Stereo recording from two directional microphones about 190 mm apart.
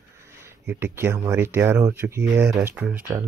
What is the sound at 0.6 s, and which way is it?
Speech, 10° right (ahead or behind).